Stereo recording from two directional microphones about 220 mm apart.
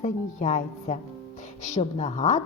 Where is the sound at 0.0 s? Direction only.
35° left (ahead or behind).